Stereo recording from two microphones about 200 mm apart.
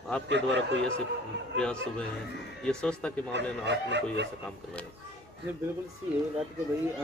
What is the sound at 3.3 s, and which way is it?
Speech, 60° right (ahead or behind).